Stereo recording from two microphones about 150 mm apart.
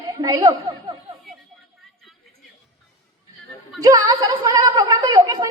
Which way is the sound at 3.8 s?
25° right (ahead or behind).